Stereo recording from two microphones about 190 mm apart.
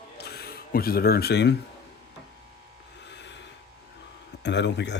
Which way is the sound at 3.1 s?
65° left (ahead or behind).